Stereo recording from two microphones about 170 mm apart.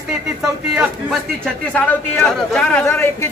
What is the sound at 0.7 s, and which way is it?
Speech, 5° right (ahead or behind).